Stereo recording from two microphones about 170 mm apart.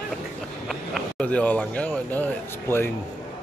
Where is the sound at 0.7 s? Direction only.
5° left (ahead or behind).